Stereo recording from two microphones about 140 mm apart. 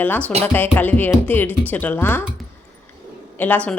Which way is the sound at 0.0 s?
10° left (ahead or behind).